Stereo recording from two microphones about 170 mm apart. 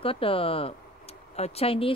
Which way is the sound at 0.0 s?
30° left (ahead or behind).